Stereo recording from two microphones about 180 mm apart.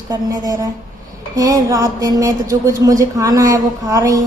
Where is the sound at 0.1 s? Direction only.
20° right (ahead or behind).